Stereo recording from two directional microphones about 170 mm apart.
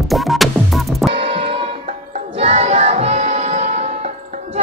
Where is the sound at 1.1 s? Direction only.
35° right (ahead or behind).